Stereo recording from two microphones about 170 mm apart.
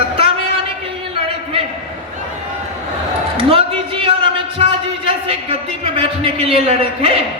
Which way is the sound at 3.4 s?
30° right (ahead or behind).